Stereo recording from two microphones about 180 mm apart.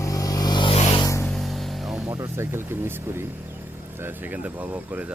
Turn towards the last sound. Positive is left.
turn(degrees=-10)  # may be behind; listen again after turning